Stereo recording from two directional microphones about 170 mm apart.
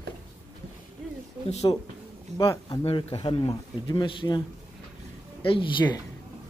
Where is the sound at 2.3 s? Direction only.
40° right (ahead or behind).